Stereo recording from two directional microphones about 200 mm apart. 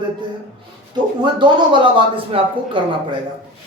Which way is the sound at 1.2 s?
20° right (ahead or behind).